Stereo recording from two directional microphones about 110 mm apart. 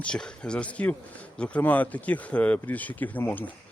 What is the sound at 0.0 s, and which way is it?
Speech, 10° left (ahead or behind).